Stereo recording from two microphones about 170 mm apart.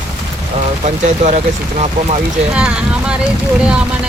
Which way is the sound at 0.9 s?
45° right (ahead or behind).